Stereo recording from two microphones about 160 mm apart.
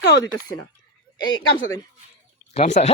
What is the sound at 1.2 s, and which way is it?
Speech, 30° left (ahead or behind).